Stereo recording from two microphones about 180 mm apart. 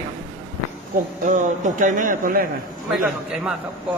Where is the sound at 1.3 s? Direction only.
45° right (ahead or behind).